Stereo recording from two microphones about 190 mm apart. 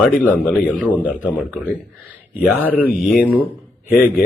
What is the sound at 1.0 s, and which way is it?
Speech, 10° right (ahead or behind).